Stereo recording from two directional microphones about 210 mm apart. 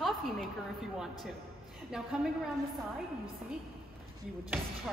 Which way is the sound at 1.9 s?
5° right (ahead or behind).